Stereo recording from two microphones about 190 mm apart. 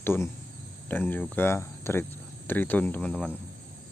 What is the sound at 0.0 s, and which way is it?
Speech, 10° left (ahead or behind).